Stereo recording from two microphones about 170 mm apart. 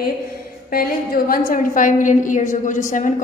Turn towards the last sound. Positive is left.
turn(degrees=50)  # may be behind; listen again after turning